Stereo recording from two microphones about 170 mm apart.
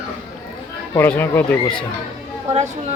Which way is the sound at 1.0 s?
10° left (ahead or behind).